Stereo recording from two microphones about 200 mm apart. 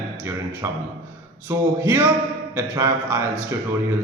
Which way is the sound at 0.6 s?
15° right (ahead or behind).